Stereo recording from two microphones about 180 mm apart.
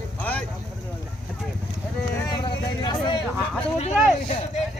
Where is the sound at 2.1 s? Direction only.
20° left (ahead or behind).